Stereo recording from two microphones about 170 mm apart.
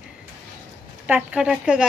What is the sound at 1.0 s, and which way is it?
Speech, 5° right (ahead or behind).